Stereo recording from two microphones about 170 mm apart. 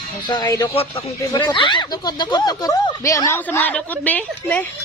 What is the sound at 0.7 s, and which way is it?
Speech, 35° left (ahead or behind).